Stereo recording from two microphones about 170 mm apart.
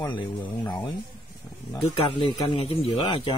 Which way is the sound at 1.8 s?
35° left (ahead or behind).